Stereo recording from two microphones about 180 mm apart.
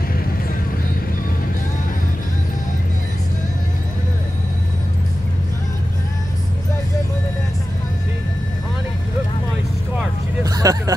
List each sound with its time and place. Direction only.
10.4 s vehicle: 20° right (ahead or behind)